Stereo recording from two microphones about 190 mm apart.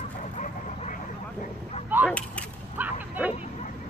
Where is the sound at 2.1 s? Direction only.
5° left (ahead or behind).